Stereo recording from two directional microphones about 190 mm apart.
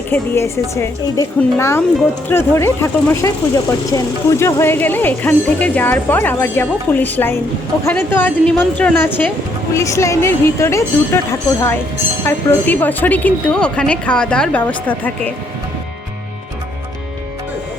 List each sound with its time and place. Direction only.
0.1 s speech: 15° left (ahead or behind)
12.2 s speech: 10° left (ahead or behind)